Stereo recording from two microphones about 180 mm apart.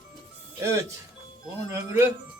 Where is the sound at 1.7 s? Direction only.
15° right (ahead or behind).